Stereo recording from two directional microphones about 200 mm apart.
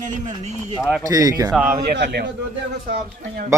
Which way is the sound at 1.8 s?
55° right (ahead or behind).